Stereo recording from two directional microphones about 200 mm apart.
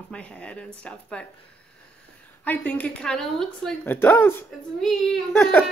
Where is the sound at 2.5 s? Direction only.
10° left (ahead or behind).